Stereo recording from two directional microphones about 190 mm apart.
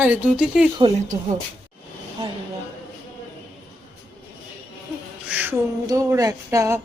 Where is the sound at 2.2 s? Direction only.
30° right (ahead or behind).